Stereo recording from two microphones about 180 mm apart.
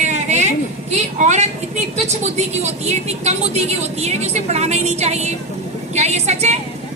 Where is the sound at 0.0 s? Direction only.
40° right (ahead or behind).